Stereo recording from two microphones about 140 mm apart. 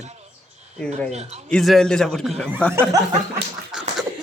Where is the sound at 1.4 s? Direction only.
5° left (ahead or behind).